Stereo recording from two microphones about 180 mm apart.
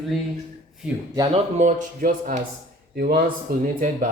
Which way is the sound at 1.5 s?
45° right (ahead or behind).